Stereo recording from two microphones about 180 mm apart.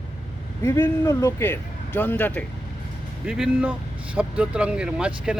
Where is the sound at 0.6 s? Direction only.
15° left (ahead or behind).